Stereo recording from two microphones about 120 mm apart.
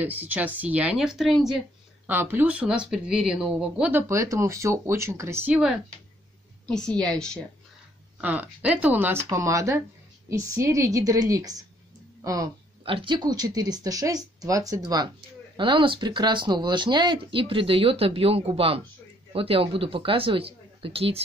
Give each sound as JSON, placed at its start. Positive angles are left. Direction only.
{"t": 0.0, "sound": "speech", "side_deg": -15}
{"t": 2.0, "sound": "speech", "side_deg": -15}
{"t": 4.1, "sound": "speech", "side_deg": -25}
{"t": 5.5, "sound": "speech", "side_deg": -5}
{"t": 6.6, "sound": "speech", "side_deg": 5}
{"t": 8.2, "sound": "speech", "side_deg": -10}
{"t": 12.8, "sound": "speech", "side_deg": -45}
{"t": 15.5, "sound": "speech", "side_deg": -45}